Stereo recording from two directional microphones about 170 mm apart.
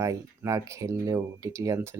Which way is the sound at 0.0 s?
20° right (ahead or behind).